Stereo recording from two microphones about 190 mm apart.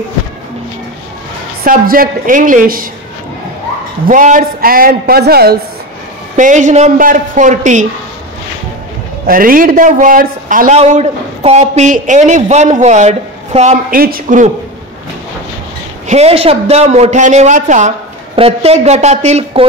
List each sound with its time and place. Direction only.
1.6 s a man's voice: 50° right (ahead or behind)
4.0 s a man's voice: 45° right (ahead or behind)
6.3 s a man's voice: 40° right (ahead or behind)
9.2 s a man's voice: 50° right (ahead or behind)
16.1 s a man's voice: 35° right (ahead or behind)